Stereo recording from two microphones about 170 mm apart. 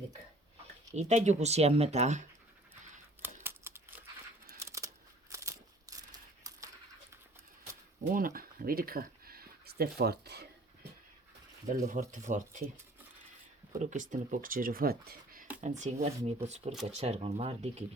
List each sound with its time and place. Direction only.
0.9 s speech: 40° right (ahead or behind)
3.4 s crumpling: 15° right (ahead or behind)
4.6 s scissors: 20° right (ahead or behind)
5.3 s crumpling: 20° right (ahead or behind)
8.1 s speech: 55° right (ahead or behind)
11.7 s speech: 45° right (ahead or behind)
13.7 s speech: 45° right (ahead or behind)
15.8 s speech: 40° right (ahead or behind)